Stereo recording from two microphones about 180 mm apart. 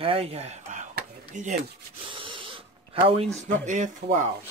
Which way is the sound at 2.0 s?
30° right (ahead or behind).